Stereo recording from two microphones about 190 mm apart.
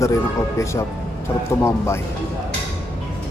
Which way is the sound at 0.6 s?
15° left (ahead or behind).